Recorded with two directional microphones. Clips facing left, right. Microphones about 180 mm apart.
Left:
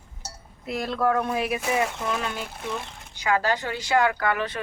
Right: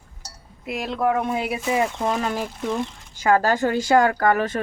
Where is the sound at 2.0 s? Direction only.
40° right (ahead or behind).